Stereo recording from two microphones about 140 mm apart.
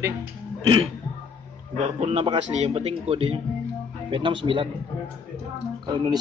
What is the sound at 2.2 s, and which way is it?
A man's voice, 35° right (ahead or behind).